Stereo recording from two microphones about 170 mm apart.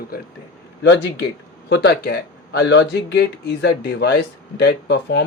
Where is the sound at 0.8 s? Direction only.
90° left.